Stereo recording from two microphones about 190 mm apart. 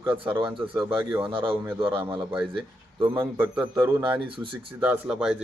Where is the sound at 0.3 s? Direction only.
25° right (ahead or behind).